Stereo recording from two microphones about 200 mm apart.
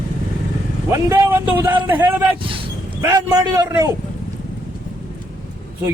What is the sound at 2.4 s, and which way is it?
Speech, 25° right (ahead or behind).